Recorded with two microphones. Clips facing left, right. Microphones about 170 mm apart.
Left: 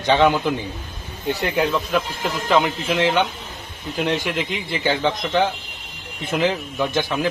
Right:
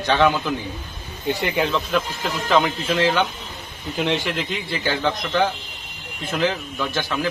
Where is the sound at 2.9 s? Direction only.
20° left (ahead or behind).